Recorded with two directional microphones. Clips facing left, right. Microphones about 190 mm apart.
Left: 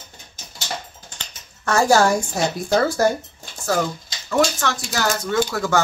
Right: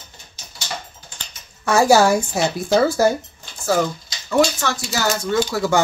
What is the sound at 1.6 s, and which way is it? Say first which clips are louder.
Speech: right 2 dB; 10° right (ahead or behind).